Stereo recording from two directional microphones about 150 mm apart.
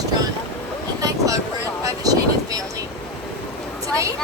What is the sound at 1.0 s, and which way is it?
Vehicle, 25° right (ahead or behind).